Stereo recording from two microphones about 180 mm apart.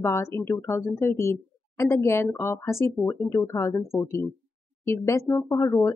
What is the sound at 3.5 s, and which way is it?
Speech, 15° left (ahead or behind).